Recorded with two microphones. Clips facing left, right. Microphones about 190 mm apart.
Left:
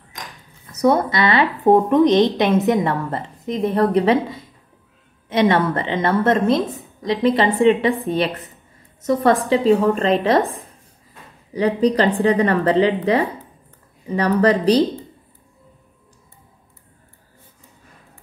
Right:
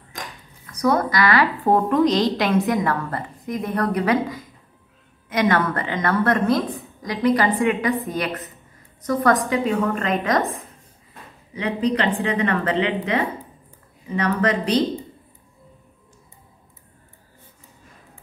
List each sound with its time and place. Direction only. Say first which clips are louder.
0.7 s a woman's voice: left 3 dB; 25° left (ahead or behind)